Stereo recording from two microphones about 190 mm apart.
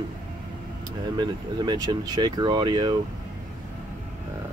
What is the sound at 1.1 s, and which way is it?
Speech, 20° right (ahead or behind).